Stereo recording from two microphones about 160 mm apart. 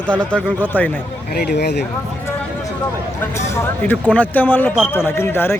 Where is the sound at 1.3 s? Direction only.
85° left.